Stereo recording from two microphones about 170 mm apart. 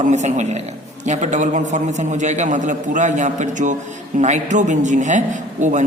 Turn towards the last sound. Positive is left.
turn(degrees=-45)  # may be behind; listen again after turning